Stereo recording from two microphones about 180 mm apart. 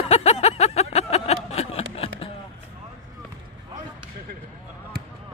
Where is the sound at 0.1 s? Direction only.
35° left (ahead or behind).